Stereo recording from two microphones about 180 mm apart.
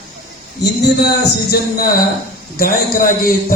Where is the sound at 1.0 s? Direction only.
60° left (ahead or behind).